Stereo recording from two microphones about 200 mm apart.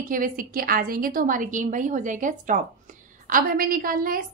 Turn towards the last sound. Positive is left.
turn(degrees=-45)  # may be behind; listen again after turning